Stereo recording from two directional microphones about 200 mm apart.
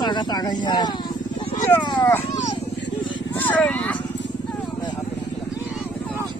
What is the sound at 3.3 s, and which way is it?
Vehicle, 10° left (ahead or behind).